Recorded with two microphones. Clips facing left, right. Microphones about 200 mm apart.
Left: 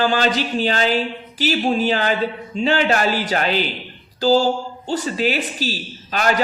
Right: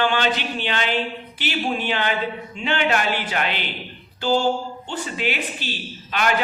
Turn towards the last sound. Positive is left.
turn(degrees=40)  # may be behind; listen again after turning